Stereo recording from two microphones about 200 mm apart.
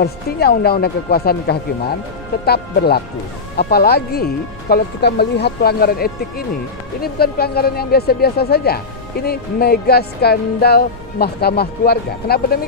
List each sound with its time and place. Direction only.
0.0 s speech: 50° left (ahead or behind)